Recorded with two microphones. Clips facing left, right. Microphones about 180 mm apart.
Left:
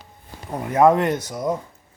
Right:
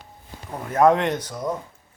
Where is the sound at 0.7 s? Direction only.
10° left (ahead or behind).